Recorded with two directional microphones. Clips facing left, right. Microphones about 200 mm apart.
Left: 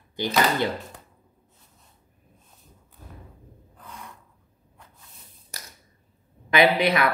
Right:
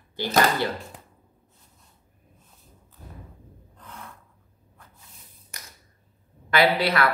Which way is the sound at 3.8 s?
15° left (ahead or behind).